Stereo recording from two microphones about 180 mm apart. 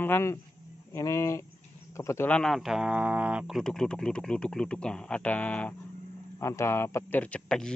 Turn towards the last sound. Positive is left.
turn(degrees=5)  # may be behind; listen again after turning